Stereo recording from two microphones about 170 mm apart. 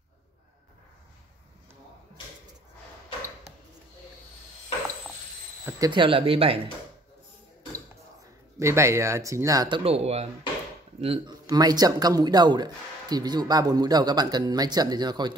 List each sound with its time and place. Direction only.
5.9 s speech: 30° right (ahead or behind)
8.5 s speech: 15° right (ahead or behind)
9.8 s speech: 40° right (ahead or behind)
11.4 s speech: 20° right (ahead or behind)